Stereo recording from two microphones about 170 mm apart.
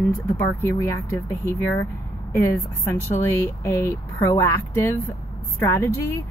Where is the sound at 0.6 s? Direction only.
15° left (ahead or behind).